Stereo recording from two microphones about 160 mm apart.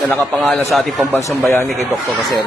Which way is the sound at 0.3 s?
Centre (ahead or behind).